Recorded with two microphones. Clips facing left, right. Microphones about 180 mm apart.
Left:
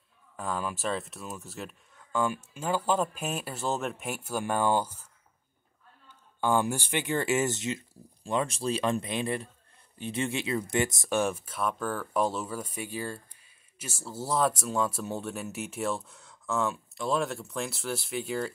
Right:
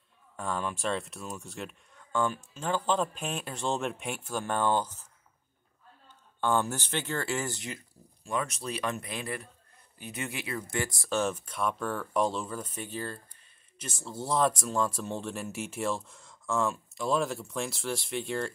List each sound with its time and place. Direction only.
0.4 s speech: centre (ahead or behind)
6.4 s speech: 10° left (ahead or behind)